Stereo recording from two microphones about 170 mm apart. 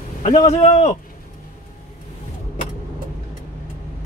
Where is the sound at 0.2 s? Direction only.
45° left (ahead or behind).